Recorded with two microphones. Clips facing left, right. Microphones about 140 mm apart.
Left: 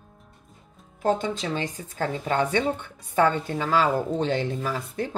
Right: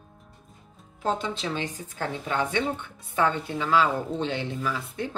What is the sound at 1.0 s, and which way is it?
A woman's voice, 50° left (ahead or behind).